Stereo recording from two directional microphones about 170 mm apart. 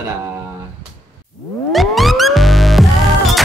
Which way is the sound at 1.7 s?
Centre (ahead or behind).